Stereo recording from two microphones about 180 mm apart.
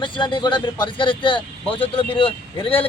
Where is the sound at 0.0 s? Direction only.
25° left (ahead or behind).